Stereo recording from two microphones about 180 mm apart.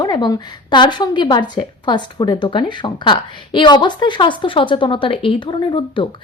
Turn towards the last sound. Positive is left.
turn(degrees=25)  # may be behind; listen again after turning